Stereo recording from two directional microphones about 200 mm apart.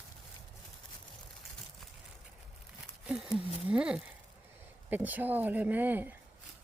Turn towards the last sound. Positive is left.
turn(degrees=-10)  # may be behind; listen again after turning